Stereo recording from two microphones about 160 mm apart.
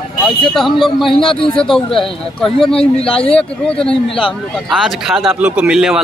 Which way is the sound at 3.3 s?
5° left (ahead or behind).